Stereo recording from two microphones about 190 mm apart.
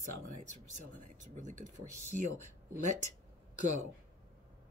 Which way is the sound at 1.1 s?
40° right (ahead or behind).